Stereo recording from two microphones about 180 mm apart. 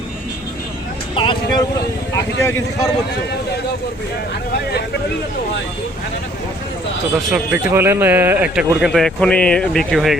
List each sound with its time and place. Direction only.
1.1 s speech: 30° left (ahead or behind)
2.1 s speech: 15° left (ahead or behind)
7.3 s speech: 10° right (ahead or behind)